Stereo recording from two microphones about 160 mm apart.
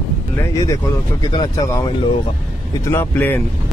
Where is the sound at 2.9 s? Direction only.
15° left (ahead or behind).